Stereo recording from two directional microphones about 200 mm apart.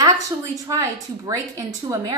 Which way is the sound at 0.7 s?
15° right (ahead or behind).